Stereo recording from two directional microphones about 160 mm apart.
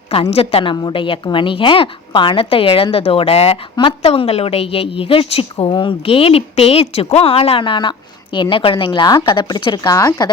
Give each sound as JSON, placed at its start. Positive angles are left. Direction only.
{"t": 0.1, "sound": "a woman's voice", "side_deg": 40}